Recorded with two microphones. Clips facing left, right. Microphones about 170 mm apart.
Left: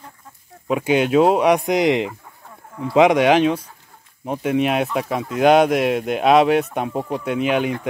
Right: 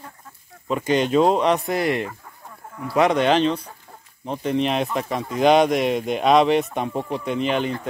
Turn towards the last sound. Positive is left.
turn(degrees=10)  # may be behind; listen again after turning